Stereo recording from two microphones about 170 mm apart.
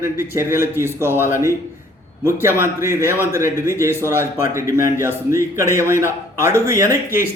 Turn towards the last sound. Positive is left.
turn(degrees=-15)  # may be behind; listen again after turning